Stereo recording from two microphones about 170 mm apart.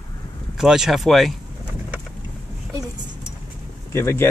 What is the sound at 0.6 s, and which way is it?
Speech, 5° right (ahead or behind).